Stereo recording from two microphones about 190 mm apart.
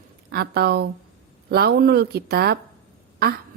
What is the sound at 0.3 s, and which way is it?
A woman's voice, 55° right (ahead or behind).